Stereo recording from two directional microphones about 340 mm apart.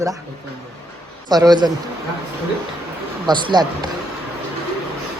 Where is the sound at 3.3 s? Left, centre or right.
Centre.